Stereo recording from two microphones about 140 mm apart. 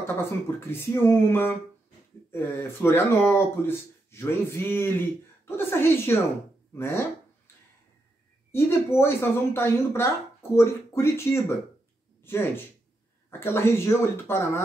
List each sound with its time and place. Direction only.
0.0 s speech: 15° left (ahead or behind)
8.5 s speech: 15° left (ahead or behind)